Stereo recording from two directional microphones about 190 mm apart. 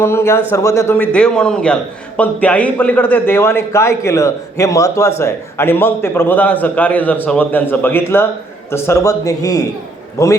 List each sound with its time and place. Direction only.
0.0 s a man's voice: 15° left (ahead or behind)